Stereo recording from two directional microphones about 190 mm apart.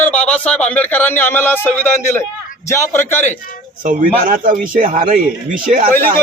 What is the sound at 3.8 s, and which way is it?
Speech, 45° right (ahead or behind).